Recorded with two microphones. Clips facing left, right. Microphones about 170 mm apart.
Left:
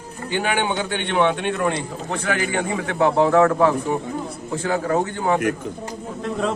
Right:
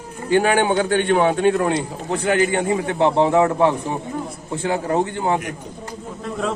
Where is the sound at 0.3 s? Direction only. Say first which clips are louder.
Right 6 dB; 45° right (ahead or behind); by 5.4 s 25° right (ahead or behind).